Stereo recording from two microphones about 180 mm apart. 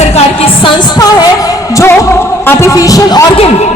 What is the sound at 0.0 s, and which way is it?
Music, 35° left (ahead or behind).